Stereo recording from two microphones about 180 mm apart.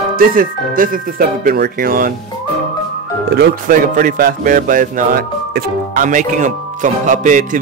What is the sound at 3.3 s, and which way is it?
Speech, 60° right (ahead or behind).